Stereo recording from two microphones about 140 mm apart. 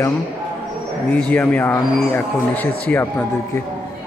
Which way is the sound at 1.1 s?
10° left (ahead or behind).